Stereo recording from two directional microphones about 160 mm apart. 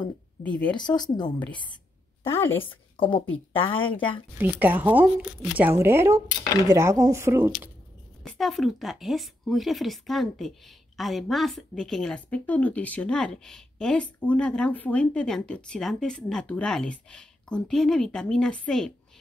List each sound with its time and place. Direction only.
0.4 s speech: 5° left (ahead or behind)
0.7 s speech: 25° left (ahead or behind)
2.3 s speech: 15° left (ahead or behind)
2.6 s speech: 30° left (ahead or behind)
4.4 s speech: 10° right (ahead or behind)
8.2 s a woman's voice: centre (ahead or behind)